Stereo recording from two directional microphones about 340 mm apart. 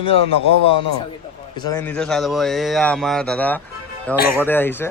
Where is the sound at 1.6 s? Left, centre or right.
Centre.